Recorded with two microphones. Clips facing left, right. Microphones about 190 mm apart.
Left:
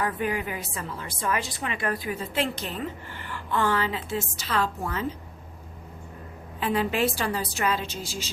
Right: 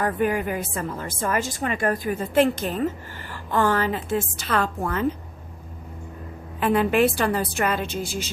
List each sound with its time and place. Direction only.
0.0 s a woman's voice: 45° right (ahead or behind)
6.6 s a woman's voice: 55° right (ahead or behind)